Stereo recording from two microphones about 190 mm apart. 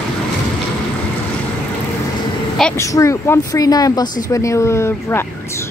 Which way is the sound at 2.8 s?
15° left (ahead or behind).